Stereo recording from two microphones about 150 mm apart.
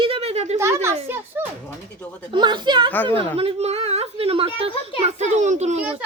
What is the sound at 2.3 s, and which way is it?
Music, 30° right (ahead or behind).